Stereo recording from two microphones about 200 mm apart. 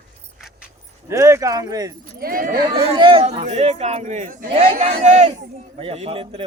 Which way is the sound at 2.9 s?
25° right (ahead or behind).